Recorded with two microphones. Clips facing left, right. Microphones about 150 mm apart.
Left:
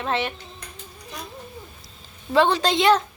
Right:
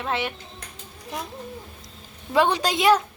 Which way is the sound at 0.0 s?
10° right (ahead or behind).